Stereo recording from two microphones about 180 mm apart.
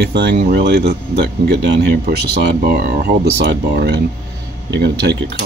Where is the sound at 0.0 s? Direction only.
70° right (ahead or behind).